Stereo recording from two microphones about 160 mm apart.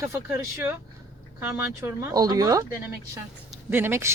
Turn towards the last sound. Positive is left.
turn(degrees=-15)  # may be behind; listen again after turning